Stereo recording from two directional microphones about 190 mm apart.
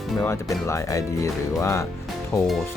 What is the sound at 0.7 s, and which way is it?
Speech, 15° left (ahead or behind).